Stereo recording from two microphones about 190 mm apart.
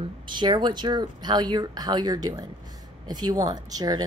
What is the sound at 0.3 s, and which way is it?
Speech, 25° right (ahead or behind).